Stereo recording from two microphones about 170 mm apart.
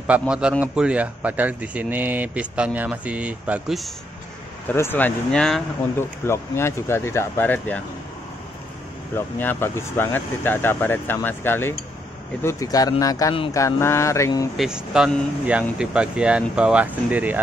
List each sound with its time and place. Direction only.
0.3 s speech: 5° right (ahead or behind)
4.7 s speech: 10° left (ahead or behind)
9.1 s speech: 15° left (ahead or behind)
14.6 s speech: 5° right (ahead or behind)